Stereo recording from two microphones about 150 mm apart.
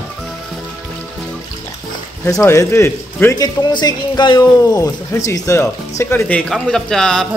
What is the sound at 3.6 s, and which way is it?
Speech, 30° left (ahead or behind).